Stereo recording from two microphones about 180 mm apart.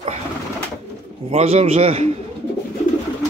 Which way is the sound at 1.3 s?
35° right (ahead or behind).